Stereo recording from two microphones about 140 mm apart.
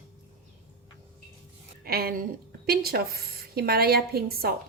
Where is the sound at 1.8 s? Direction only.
90° right.